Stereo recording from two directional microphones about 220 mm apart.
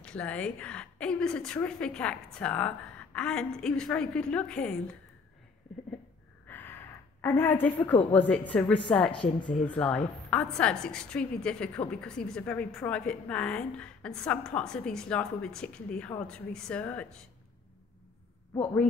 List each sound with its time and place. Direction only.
0.0 s a woman's voice: 5° left (ahead or behind)
6.4 s a woman's voice: 10° left (ahead or behind)
9.1 s speech: 25° left (ahead or behind)
9.7 s a woman's voice: 5° left (ahead or behind)